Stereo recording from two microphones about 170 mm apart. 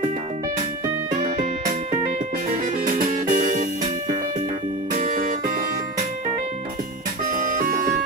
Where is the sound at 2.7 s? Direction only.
50° right (ahead or behind).